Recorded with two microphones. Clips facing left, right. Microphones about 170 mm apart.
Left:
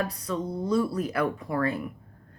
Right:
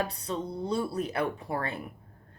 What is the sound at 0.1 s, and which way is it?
A woman's voice, 30° right (ahead or behind).